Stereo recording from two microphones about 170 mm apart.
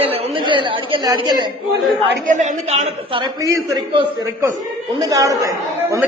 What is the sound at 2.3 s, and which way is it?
A man's voice, 45° right (ahead or behind).